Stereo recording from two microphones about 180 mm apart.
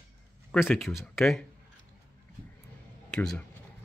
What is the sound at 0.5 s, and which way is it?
Speech, 5° left (ahead or behind).